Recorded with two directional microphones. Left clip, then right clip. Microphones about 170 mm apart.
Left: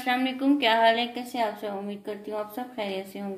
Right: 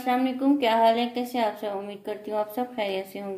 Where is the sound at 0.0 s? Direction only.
15° right (ahead or behind).